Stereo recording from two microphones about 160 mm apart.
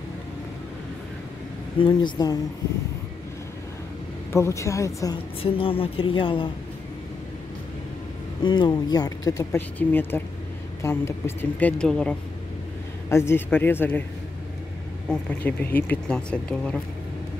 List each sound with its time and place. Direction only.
1.8 s speech: 30° left (ahead or behind)
4.3 s speech: 20° left (ahead or behind)
5.4 s a woman's voice: 35° left (ahead or behind)
8.4 s speech: 30° left (ahead or behind); by 14.0 s 10° left (ahead or behind)
15.0 s speech: 10° left (ahead or behind)